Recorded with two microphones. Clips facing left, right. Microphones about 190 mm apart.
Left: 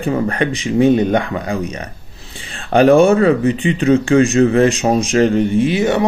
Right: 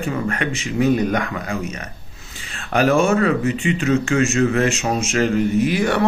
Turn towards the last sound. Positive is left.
turn(degrees=20)  # may be behind; listen again after turning